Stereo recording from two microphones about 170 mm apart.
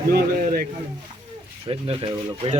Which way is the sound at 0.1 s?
60° right (ahead or behind).